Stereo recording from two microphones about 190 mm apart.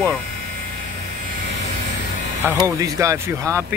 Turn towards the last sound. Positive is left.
turn(degrees=-15)  # may be behind; listen again after turning